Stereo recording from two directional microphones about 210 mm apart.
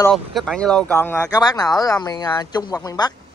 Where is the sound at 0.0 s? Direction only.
Centre (ahead or behind).